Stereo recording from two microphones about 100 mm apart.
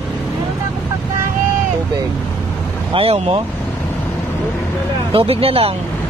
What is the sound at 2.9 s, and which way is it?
Speech, 65° right (ahead or behind).